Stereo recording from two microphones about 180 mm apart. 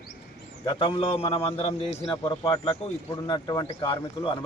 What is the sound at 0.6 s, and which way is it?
A man's voice, 30° left (ahead or behind).